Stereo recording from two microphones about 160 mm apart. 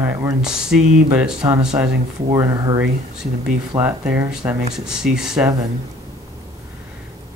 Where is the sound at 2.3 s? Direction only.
20° right (ahead or behind).